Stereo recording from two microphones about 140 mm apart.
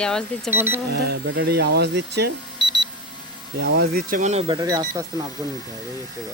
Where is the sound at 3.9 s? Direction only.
70° right (ahead or behind).